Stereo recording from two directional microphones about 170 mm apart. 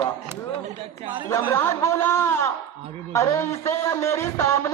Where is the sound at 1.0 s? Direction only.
30° right (ahead or behind).